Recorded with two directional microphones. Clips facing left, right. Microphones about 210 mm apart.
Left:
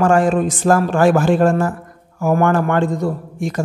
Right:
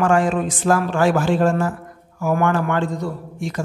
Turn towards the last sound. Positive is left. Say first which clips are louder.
# left 4 dB
turn(degrees=45)  # may be behind; listen again after turning